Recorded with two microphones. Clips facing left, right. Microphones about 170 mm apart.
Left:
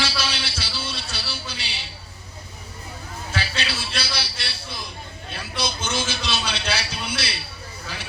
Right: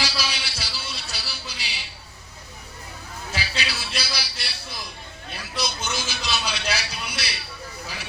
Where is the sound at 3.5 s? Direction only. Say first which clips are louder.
Left 1 dB; 25° left (ahead or behind).